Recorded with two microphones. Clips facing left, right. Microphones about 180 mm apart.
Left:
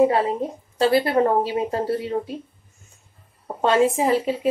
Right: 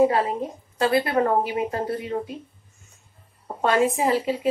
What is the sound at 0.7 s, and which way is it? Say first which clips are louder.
A woman's voice: left 3 dB; 30° left (ahead or behind).